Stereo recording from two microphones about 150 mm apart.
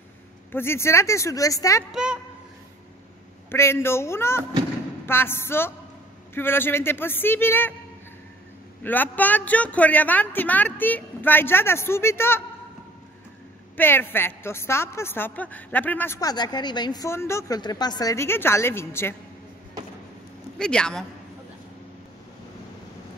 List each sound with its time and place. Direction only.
0.5 s a woman's voice: 15° left (ahead or behind)
1.9 s a woman's voice: 5° right (ahead or behind)
3.4 s speech: 15° left (ahead or behind)
8.8 s speech: 10° left (ahead or behind)
13.7 s speech: 15° left (ahead or behind)
16.2 s a woman's voice: 25° left (ahead or behind)
20.5 s speech: 5° left (ahead or behind)